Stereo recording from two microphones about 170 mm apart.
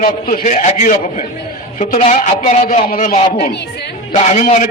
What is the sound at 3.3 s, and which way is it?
Speech, 70° left (ahead or behind).